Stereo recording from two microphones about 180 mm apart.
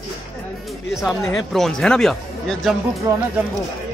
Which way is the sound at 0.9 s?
Centre (ahead or behind).